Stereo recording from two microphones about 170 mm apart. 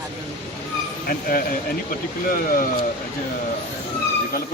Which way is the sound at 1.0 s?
60° left (ahead or behind).